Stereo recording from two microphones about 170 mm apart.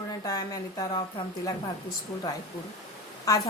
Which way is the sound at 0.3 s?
20° left (ahead or behind).